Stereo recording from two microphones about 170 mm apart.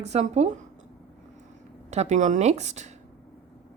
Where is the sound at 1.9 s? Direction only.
40° right (ahead or behind).